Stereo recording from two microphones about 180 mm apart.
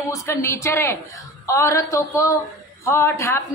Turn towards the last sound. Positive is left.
turn(degrees=15)  # may be behind; listen again after turning